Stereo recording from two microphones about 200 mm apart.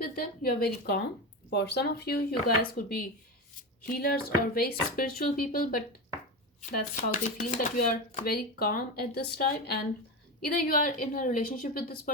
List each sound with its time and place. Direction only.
0.2 s speech: 45° left (ahead or behind)